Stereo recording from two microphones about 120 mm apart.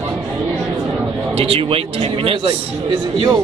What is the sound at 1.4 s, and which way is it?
Speech, 50° right (ahead or behind).